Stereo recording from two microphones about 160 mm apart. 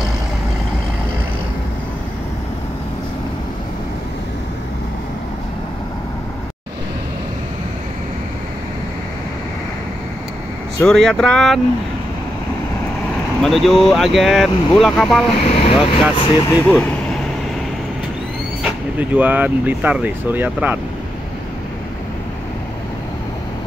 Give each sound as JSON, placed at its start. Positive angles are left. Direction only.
{"t": 10.8, "sound": "speech", "side_deg": 5}
{"t": 13.4, "sound": "speech", "side_deg": 0}
{"t": 15.4, "sound": "speech", "side_deg": 40}
{"t": 16.2, "sound": "speech", "side_deg": 25}
{"t": 16.6, "sound": "speech", "side_deg": 10}
{"t": 18.6, "sound": "speech", "side_deg": -10}